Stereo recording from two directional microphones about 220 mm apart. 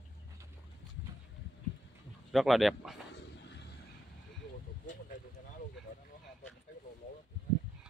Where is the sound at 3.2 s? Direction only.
50° left (ahead or behind).